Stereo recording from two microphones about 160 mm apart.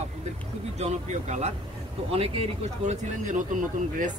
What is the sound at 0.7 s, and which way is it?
A man's voice, 45° right (ahead or behind).